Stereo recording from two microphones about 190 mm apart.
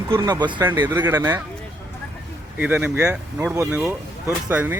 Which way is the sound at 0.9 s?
10° right (ahead or behind).